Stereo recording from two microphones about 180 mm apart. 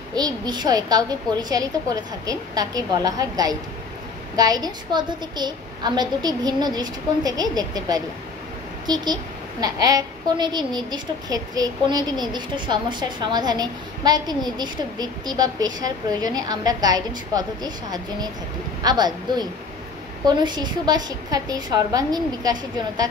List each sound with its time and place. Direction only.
0.1 s a woman's voice: 25° right (ahead or behind)
2.2 s a woman's voice: 20° right (ahead or behind)